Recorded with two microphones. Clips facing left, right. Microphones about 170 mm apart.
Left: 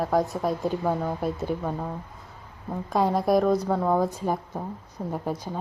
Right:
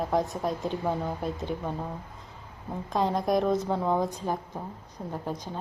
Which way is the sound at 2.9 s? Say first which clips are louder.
Left 4 dB; 5° left (ahead or behind).